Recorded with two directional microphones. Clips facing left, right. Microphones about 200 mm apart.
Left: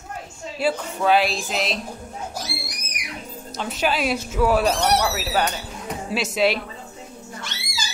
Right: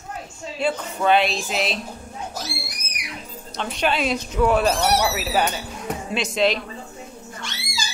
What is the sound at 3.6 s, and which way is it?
A woman's voice, 5° left (ahead or behind).